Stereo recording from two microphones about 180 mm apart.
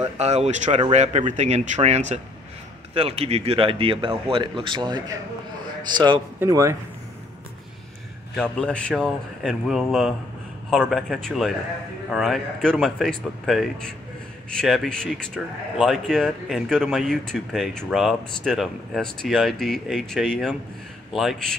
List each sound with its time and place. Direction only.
0.2 s a man's voice: 40° right (ahead or behind)
6.4 s speech: 15° right (ahead or behind)
8.4 s speech: 5° left (ahead or behind)